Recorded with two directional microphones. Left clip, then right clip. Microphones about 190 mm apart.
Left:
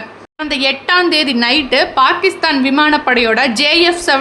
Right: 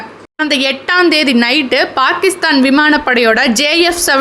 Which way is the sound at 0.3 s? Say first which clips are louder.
Right 2 dB; 20° right (ahead or behind).